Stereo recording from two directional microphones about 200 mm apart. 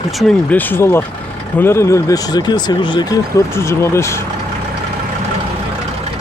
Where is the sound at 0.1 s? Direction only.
Centre (ahead or behind).